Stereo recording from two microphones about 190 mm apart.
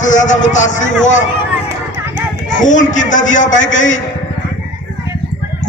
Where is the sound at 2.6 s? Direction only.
40° left (ahead or behind).